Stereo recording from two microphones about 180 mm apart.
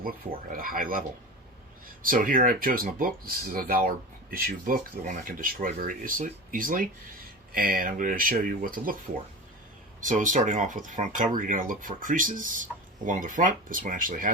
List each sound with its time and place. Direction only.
0.5 s speech: 50° right (ahead or behind)
10.0 s speech: 45° right (ahead or behind)